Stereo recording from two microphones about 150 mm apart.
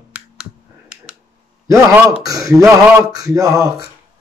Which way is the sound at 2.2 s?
25° right (ahead or behind).